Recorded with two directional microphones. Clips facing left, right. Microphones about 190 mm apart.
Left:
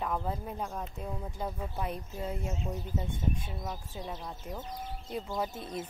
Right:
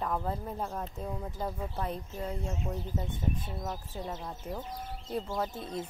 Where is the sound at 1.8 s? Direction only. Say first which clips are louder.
Left 1 dB; 10° left (ahead or behind).